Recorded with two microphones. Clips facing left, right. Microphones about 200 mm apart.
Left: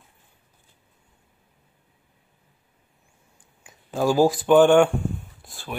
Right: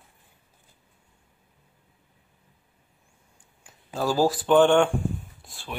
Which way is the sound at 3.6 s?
15° left (ahead or behind).